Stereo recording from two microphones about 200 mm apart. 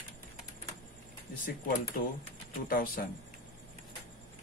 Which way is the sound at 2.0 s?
45° left (ahead or behind).